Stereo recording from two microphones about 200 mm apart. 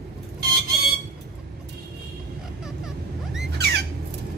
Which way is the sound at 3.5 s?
55° right (ahead or behind).